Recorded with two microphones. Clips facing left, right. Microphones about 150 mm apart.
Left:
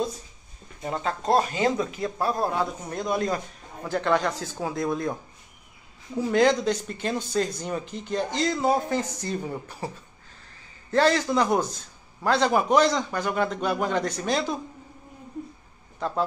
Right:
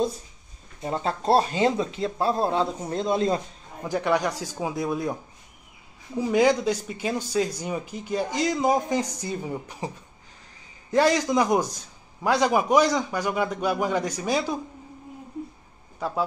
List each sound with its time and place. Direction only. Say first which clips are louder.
0.8 s speech: right 2 dB; 30° right (ahead or behind)
3.9 s speech: even; 15° right (ahead or behind)
6.1 s speech: even; 10° right (ahead or behind)
10.9 s speech: right 1 dB; 15° right (ahead or behind)
16.0 s speech: even; 10° right (ahead or behind)